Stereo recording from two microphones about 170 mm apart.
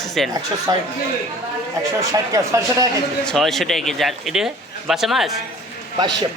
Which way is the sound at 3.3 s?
Centre (ahead or behind).